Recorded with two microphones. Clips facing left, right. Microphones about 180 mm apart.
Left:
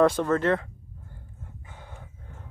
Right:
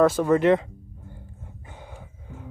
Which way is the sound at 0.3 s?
15° right (ahead or behind).